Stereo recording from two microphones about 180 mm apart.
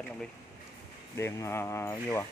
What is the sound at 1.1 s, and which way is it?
Speech, 15° left (ahead or behind).